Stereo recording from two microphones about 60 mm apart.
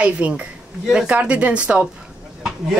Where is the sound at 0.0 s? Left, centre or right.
Right.